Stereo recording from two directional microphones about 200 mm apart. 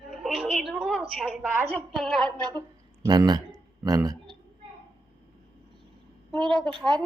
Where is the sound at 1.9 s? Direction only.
Centre (ahead or behind).